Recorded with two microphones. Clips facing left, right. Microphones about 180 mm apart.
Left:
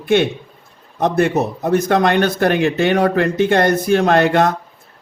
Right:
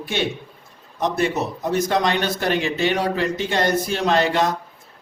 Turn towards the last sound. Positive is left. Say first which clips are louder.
# left 5 dB
turn(degrees=55)  # may be behind; listen again after turning